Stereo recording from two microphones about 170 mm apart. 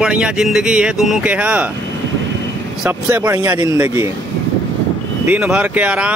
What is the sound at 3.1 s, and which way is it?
Speech, 15° right (ahead or behind).